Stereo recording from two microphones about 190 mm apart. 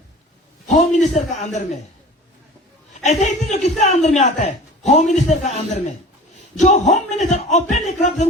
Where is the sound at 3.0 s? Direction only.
40° left (ahead or behind).